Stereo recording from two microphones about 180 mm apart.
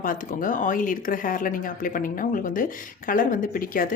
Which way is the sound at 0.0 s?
50° left (ahead or behind).